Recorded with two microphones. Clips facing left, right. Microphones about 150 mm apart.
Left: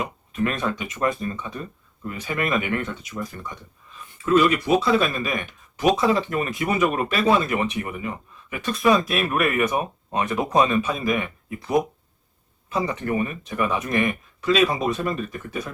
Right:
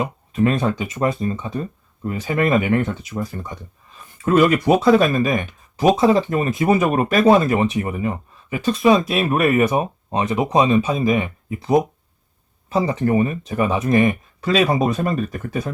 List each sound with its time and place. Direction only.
0.0 s speech: 30° right (ahead or behind)
4.4 s speech: 50° right (ahead or behind)